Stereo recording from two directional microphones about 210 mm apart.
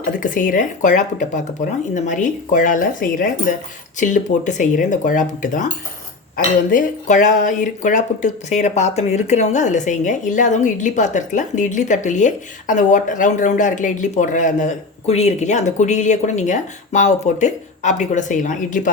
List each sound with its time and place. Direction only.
0.2 s speech: 40° left (ahead or behind)